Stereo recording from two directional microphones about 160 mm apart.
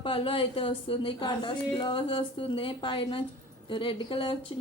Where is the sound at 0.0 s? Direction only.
35° left (ahead or behind).